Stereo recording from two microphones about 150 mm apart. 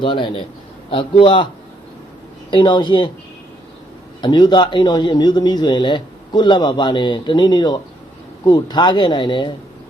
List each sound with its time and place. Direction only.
0.0 s a man's voice: 30° left (ahead or behind)
2.5 s a man's voice: 30° left (ahead or behind)
4.2 s a man's voice: 30° left (ahead or behind)